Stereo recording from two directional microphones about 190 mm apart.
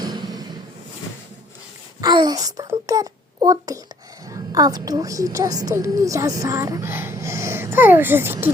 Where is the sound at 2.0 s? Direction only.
20° right (ahead or behind).